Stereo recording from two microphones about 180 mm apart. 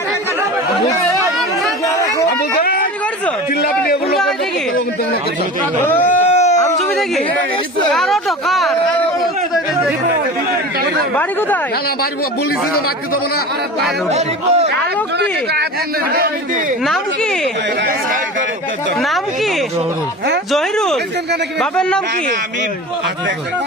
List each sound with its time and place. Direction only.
4.1 s a sound: centre (ahead or behind)
5.8 s speech: 10° left (ahead or behind)
7.9 s speech: centre (ahead or behind)
11.2 s speech: 10° left (ahead or behind)
14.1 s a man's voice: 35° right (ahead or behind)
20.5 s speech: 5° left (ahead or behind)